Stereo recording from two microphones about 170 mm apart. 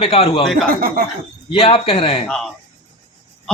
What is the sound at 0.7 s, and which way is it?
Speech, 60° right (ahead or behind).